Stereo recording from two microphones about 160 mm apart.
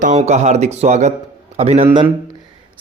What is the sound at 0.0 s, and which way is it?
Speech, 45° right (ahead or behind).